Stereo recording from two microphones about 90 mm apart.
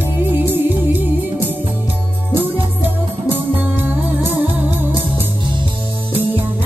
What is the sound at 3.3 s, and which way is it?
Music, 20° right (ahead or behind).